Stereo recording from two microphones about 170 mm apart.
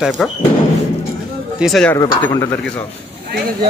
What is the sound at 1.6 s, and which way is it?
Speech, 5° left (ahead or behind).